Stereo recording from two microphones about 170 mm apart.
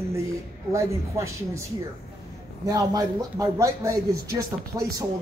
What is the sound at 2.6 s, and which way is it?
Speech, 20° right (ahead or behind).